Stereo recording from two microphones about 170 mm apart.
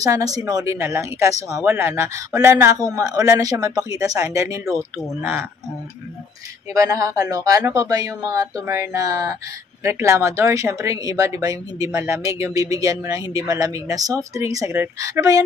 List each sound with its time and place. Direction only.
0.0 s speech: 20° right (ahead or behind)
6.7 s speech: 20° right (ahead or behind)